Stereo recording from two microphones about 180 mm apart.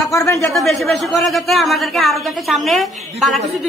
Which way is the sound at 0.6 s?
Centre (ahead or behind).